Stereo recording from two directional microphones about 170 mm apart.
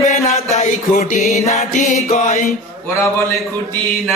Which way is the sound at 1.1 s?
40° left (ahead or behind).